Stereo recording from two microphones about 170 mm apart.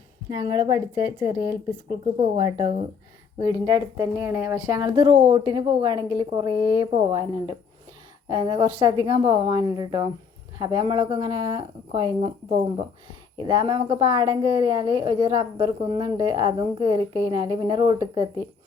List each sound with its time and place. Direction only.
0.3 s a woman's voice: 20° right (ahead or behind)
2.1 s a woman's voice: 35° right (ahead or behind)
5.1 s a woman's voice: 35° right (ahead or behind)
13.3 s a woman's voice: 25° right (ahead or behind)